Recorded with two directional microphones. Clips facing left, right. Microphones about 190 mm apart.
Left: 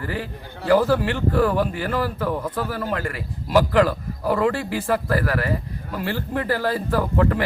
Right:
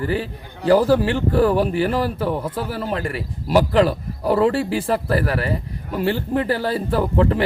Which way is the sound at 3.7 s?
30° right (ahead or behind).